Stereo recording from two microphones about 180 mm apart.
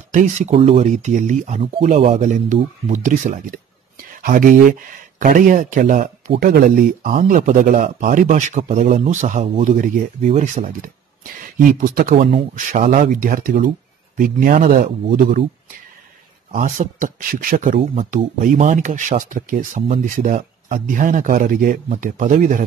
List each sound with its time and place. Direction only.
0.1 s speech: 40° right (ahead or behind)
16.5 s speech: 45° right (ahead or behind)